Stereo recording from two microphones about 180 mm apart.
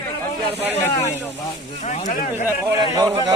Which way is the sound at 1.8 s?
40° left (ahead or behind).